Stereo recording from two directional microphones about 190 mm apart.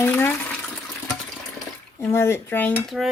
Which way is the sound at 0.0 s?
10° left (ahead or behind).